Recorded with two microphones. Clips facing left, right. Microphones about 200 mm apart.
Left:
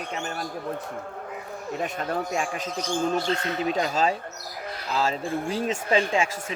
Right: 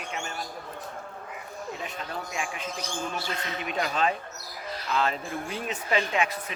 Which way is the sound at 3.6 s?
30° left (ahead or behind).